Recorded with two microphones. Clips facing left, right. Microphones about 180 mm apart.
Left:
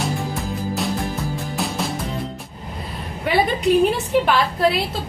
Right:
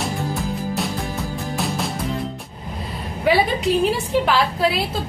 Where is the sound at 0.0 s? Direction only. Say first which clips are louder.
Even; centre (ahead or behind).